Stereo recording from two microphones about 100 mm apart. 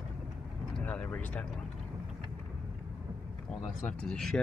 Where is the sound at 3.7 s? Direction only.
5° left (ahead or behind).